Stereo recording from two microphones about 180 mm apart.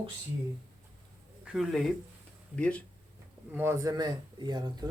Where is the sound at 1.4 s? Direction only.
Centre (ahead or behind).